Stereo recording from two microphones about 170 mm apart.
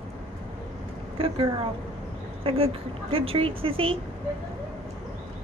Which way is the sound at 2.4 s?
35° right (ahead or behind).